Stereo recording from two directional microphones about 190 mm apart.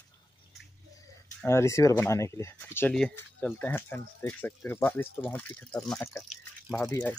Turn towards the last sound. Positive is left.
turn(degrees=10)  # may be behind; listen again after turning